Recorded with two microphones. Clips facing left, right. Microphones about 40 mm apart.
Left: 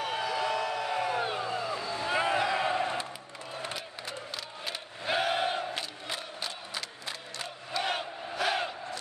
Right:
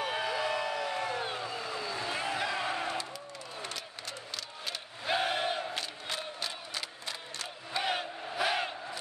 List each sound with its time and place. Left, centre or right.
0.0 s crowd: centre
1.4 s vehicle: left
2.5 s a sound: centre
4.6 s crowd: centre